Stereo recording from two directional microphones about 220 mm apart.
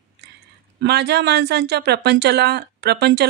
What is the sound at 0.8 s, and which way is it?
Speech, 50° right (ahead or behind).